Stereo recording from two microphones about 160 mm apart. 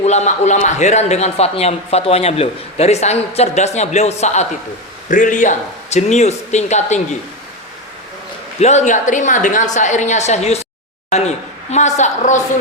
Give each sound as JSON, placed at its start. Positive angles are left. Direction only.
{"t": 0.0, "sound": "speech", "side_deg": 45}
{"t": 8.5, "sound": "speech", "side_deg": 45}